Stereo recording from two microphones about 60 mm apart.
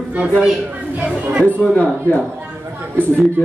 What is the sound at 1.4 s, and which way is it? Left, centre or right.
Speech, left.